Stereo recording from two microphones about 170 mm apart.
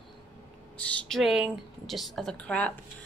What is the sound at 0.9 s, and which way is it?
A woman's voice, 5° left (ahead or behind).